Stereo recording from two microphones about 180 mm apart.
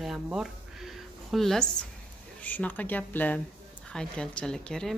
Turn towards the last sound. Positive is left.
turn(degrees=5)  # may be behind; listen again after turning